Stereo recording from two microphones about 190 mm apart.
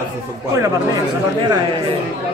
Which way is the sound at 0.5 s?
15° right (ahead or behind).